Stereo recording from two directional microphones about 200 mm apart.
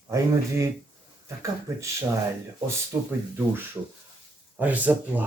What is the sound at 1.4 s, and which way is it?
Speech, 15° right (ahead or behind).